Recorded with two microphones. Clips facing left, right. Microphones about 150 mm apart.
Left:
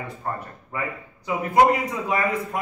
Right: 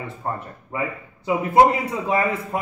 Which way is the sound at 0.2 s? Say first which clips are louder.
Right 3 dB; 25° right (ahead or behind).